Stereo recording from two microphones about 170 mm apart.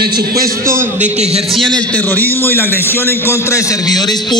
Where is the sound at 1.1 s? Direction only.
40° right (ahead or behind).